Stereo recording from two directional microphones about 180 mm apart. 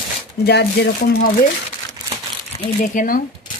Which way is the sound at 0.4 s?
65° left (ahead or behind).